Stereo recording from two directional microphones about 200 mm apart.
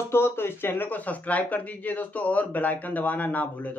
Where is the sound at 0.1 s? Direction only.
10° left (ahead or behind).